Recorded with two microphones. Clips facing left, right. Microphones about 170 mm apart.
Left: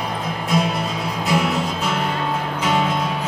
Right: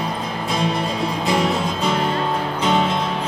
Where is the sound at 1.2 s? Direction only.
30° right (ahead or behind).